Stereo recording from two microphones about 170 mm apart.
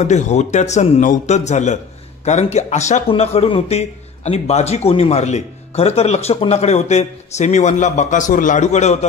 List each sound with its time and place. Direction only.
0.0 s a man's voice: 45° left (ahead or behind)